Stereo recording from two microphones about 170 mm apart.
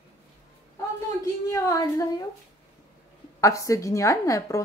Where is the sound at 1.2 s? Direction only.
20° left (ahead or behind).